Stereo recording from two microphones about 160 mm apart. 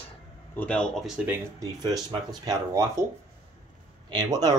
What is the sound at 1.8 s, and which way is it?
Speech, 25° right (ahead or behind).